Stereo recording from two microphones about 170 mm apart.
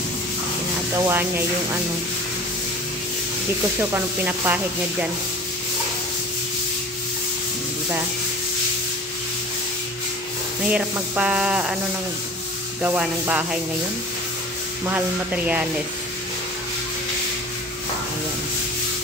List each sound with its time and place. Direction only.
0.9 s sanding: 15° right (ahead or behind)
3.9 s sanding: 10° right (ahead or behind)
10.7 s sanding: 5° right (ahead or behind)
12.8 s sanding: 10° right (ahead or behind)
14.9 s sanding: 10° right (ahead or behind)